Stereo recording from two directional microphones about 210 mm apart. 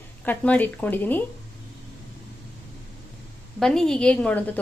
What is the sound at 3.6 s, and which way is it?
A woman's voice, centre (ahead or behind).